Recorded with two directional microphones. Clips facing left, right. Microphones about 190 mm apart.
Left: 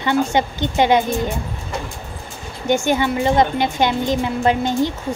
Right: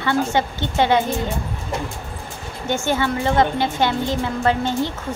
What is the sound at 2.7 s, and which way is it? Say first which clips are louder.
A woman's voice: left 3 dB; 15° left (ahead or behind).